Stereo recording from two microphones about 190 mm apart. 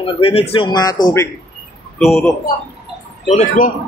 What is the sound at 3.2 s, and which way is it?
Speech, 40° left (ahead or behind).